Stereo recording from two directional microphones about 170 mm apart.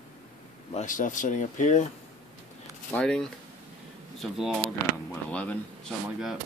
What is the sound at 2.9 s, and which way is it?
Speech, 5° left (ahead or behind).